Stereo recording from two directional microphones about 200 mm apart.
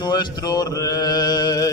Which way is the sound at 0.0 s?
20° left (ahead or behind).